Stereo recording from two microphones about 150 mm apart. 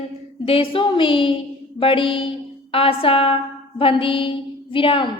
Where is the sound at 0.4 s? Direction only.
35° left (ahead or behind).